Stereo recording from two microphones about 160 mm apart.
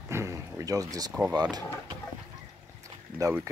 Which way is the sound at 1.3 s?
25° right (ahead or behind).